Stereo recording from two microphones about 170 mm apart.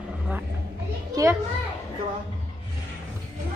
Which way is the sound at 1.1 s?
20° right (ahead or behind).